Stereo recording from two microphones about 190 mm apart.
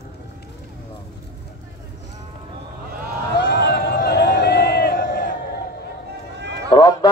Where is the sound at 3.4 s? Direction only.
65° left (ahead or behind); by 5.3 s 50° left (ahead or behind).